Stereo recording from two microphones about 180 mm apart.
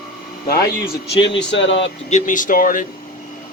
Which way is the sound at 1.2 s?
85° left.